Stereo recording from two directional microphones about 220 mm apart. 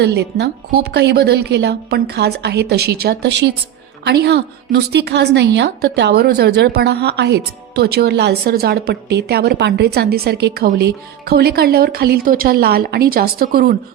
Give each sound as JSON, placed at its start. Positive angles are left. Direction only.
{"t": 0.0, "sound": "a woman's voice", "side_deg": -50}